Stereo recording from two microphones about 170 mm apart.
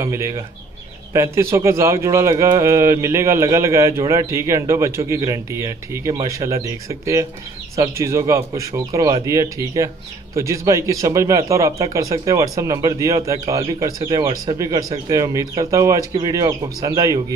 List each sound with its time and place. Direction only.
0.0 s a man's voice: 20° right (ahead or behind)